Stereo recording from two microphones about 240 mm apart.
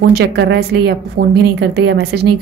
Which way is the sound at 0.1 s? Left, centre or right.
Right.